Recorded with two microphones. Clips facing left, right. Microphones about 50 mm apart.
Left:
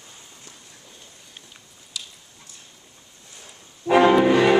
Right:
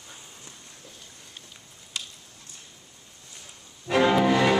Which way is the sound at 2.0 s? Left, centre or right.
Right.